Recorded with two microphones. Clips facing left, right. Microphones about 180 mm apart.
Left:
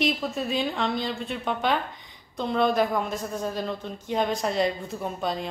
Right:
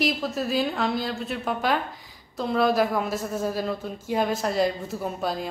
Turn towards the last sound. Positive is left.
turn(degrees=-5)  # may be behind; listen again after turning